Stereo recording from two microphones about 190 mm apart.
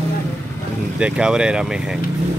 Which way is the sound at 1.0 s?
5° right (ahead or behind).